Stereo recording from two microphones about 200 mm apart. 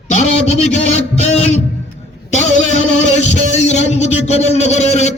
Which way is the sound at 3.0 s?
35° left (ahead or behind).